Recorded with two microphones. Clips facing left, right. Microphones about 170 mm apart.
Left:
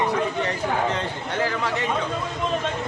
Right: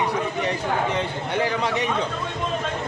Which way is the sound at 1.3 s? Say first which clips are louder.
Right 1 dB; 20° right (ahead or behind).